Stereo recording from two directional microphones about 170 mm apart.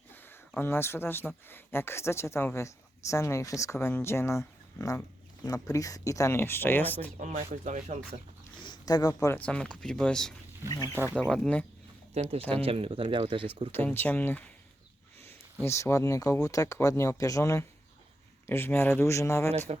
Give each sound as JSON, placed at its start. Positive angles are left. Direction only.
{"t": 0.1, "sound": "a sound", "side_deg": 10}
{"t": 1.5, "sound": "a woman's voice", "side_deg": 15}
{"t": 7.2, "sound": "speech", "side_deg": -45}
{"t": 8.5, "sound": "speech", "side_deg": 25}
{"t": 9.5, "sound": "speech", "side_deg": 5}
{"t": 10.8, "sound": "speech", "side_deg": -10}
{"t": 11.2, "sound": "a woman's voice", "side_deg": 5}
{"t": 12.6, "sound": "speech", "side_deg": -35}
{"t": 13.7, "sound": "a woman's voice", "side_deg": 10}
{"t": 15.6, "sound": "a woman's voice", "side_deg": 15}
{"t": 19.5, "sound": "speech", "side_deg": -40}